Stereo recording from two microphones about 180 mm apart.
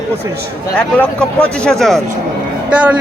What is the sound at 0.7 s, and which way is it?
Speech, 5° left (ahead or behind).